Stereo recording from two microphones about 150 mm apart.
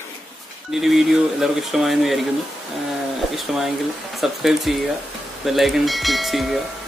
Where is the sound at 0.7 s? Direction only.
Centre (ahead or behind).